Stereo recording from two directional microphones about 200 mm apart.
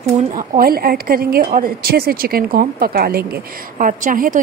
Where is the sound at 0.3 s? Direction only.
45° right (ahead or behind).